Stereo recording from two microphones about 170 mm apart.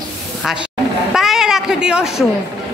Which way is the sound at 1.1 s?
Centre (ahead or behind).